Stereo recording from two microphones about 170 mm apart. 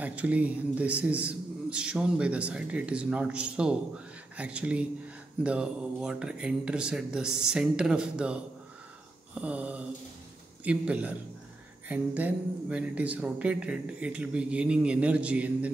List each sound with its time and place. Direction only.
0.0 s speech: 10° right (ahead or behind)